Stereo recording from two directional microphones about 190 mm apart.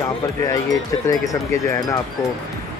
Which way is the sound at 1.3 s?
15° left (ahead or behind).